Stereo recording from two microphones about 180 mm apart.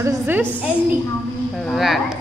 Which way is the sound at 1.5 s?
Centre (ahead or behind).